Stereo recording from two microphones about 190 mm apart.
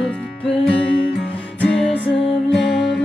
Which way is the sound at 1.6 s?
5° left (ahead or behind).